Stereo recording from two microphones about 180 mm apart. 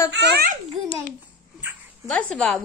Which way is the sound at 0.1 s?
80° right.